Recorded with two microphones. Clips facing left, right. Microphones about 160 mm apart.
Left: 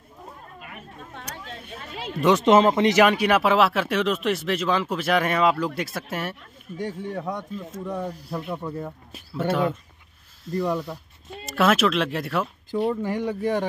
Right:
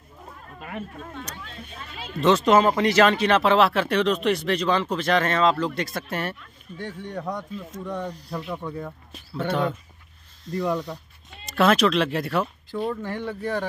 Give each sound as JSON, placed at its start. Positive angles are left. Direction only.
{"t": 2.1, "sound": "speech", "side_deg": 10}
{"t": 2.4, "sound": "speech", "side_deg": 25}
{"t": 12.7, "sound": "speech", "side_deg": 20}